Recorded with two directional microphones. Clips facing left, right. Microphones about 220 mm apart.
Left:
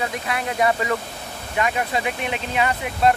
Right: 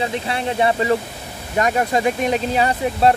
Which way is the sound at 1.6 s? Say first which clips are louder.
Right 5 dB; 45° right (ahead or behind).